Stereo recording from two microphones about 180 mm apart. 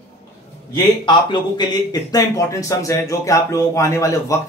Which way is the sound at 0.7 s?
25° left (ahead or behind).